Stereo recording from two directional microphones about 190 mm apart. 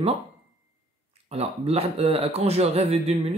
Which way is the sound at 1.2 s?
30° right (ahead or behind).